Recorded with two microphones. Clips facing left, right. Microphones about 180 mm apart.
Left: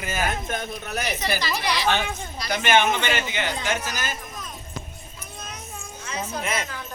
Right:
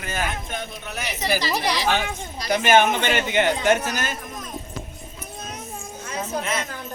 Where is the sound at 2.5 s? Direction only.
40° right (ahead or behind); by 4.0 s 60° right (ahead or behind).